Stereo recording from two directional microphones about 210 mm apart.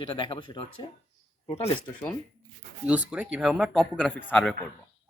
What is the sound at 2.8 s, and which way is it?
Speech, 5° right (ahead or behind).